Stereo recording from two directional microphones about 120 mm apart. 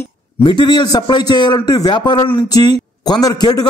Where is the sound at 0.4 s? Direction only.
40° left (ahead or behind).